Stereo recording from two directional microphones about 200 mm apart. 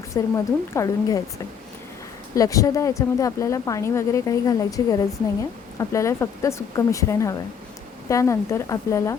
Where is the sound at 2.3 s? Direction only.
15° left (ahead or behind).